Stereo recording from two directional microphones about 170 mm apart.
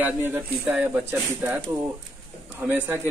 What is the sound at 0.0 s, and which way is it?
Speech, 10° right (ahead or behind).